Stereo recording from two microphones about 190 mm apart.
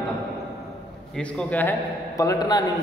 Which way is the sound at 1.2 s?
5° left (ahead or behind).